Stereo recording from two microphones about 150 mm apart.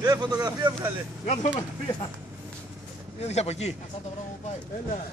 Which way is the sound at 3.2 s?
45° left (ahead or behind).